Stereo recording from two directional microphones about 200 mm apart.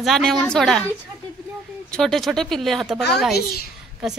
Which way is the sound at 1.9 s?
Centre (ahead or behind).